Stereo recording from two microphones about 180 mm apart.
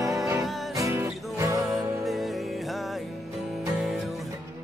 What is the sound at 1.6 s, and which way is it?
Music, centre (ahead or behind).